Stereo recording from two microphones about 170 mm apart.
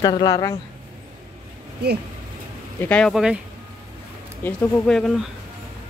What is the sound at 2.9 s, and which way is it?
Speech, centre (ahead or behind).